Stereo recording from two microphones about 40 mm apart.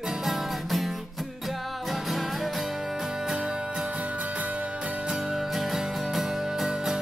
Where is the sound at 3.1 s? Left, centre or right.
Centre.